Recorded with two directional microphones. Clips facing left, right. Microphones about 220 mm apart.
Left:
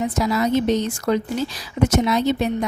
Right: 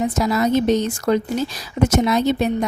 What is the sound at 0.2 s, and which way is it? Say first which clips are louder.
A woman's voice: right 1 dB; 45° right (ahead or behind).